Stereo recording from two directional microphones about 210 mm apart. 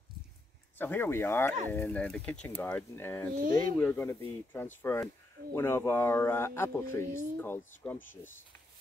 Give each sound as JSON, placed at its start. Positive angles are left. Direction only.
{"t": 0.7, "sound": "speech", "side_deg": 10}
{"t": 3.3, "sound": "speech", "side_deg": -40}
{"t": 3.7, "sound": "speech", "side_deg": 10}